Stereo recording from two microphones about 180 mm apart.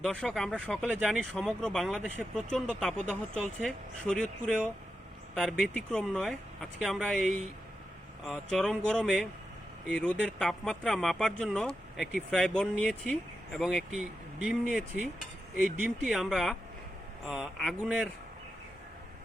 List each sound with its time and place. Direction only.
0.0 s speech: 5° left (ahead or behind)